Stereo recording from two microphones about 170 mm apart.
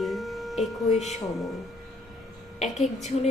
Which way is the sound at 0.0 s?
Centre (ahead or behind).